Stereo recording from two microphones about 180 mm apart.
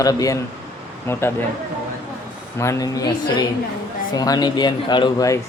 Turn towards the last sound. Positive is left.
turn(degrees=20)  # may be behind; listen again after turning